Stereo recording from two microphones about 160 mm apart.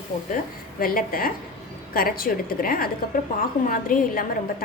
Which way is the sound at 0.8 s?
65° left (ahead or behind).